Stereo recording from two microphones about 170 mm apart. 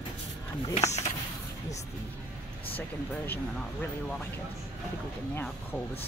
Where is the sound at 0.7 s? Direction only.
40° left (ahead or behind).